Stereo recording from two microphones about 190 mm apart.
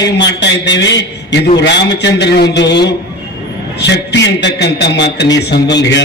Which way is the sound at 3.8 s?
65° left (ahead or behind).